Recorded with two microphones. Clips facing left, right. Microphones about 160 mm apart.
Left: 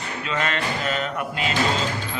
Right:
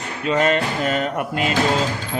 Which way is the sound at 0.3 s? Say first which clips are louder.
Right 8 dB; 45° right (ahead or behind).